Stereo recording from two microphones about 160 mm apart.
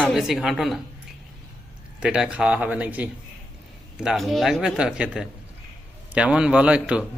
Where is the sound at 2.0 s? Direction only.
5° right (ahead or behind).